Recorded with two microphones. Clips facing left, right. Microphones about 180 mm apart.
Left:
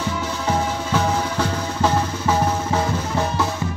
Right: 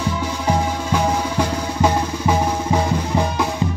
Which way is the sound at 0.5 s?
15° right (ahead or behind).